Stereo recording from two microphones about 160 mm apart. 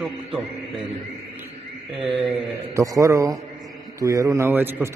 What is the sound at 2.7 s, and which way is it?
A man's voice, 20° right (ahead or behind).